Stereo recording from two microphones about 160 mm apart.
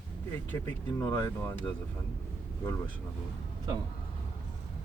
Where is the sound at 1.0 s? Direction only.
15° left (ahead or behind).